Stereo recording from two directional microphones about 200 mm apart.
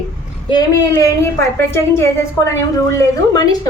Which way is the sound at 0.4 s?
20° left (ahead or behind).